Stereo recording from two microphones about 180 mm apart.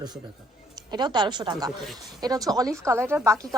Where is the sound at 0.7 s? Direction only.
25° right (ahead or behind).